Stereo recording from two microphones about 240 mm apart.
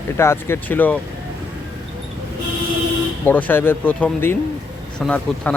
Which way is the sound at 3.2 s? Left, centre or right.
Centre.